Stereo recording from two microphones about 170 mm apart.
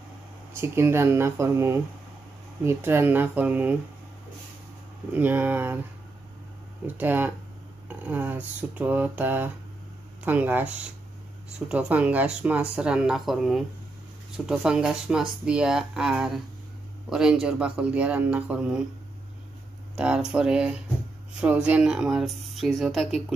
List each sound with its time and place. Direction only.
0.6 s speech: 15° right (ahead or behind)
5.1 s speech: 10° right (ahead or behind)
7.0 s speech: 10° right (ahead or behind)
11.7 s speech: 10° right (ahead or behind)
20.0 s speech: 5° right (ahead or behind)